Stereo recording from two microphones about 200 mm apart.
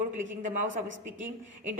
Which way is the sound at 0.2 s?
40° right (ahead or behind).